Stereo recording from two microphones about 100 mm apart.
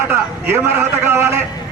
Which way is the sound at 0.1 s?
20° right (ahead or behind).